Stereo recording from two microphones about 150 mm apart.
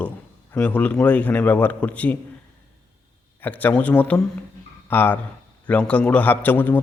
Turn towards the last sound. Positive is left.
turn(degrees=10)  # may be behind; listen again after turning